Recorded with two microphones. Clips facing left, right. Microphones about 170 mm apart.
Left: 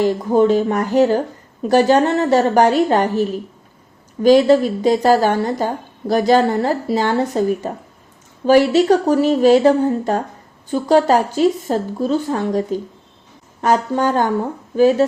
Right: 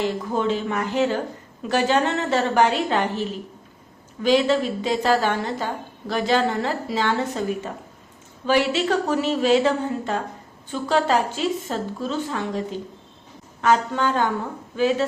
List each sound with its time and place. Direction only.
0.0 s a woman's voice: 40° left (ahead or behind)